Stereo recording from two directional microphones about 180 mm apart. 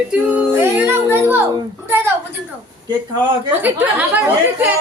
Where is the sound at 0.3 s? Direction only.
15° right (ahead or behind).